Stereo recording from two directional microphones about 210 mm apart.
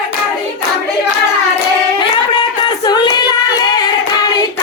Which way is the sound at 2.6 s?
20° left (ahead or behind).